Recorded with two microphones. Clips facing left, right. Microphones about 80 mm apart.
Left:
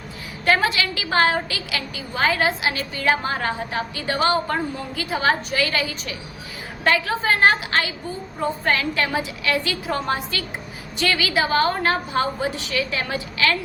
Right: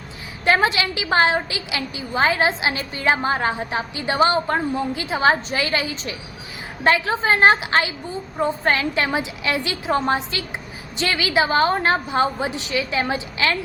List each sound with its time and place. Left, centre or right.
0.4 s a woman's voice: right